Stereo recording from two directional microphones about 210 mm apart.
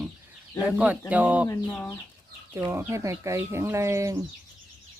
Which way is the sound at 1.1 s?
5° right (ahead or behind).